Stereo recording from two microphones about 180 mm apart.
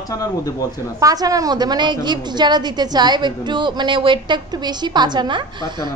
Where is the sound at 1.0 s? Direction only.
20° right (ahead or behind).